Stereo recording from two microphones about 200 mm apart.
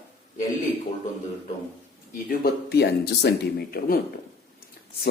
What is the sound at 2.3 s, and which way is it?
Speech, 55° left (ahead or behind).